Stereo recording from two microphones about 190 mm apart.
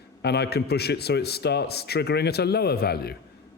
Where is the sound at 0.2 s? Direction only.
60° left (ahead or behind).